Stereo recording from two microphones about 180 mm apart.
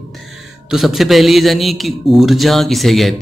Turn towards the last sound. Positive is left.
turn(degrees=0)  # may be behind; listen again after turning